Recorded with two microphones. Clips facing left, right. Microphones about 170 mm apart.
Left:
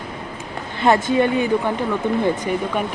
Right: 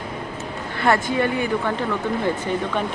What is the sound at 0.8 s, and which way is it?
Speech, 20° left (ahead or behind).